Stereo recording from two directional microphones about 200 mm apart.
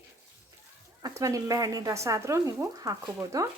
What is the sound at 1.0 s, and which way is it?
Speech, 15° right (ahead or behind).